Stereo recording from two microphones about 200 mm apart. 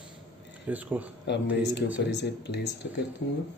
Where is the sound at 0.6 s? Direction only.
10° right (ahead or behind).